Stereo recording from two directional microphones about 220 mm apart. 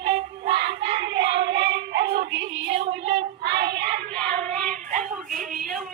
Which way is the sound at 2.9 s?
25° right (ahead or behind).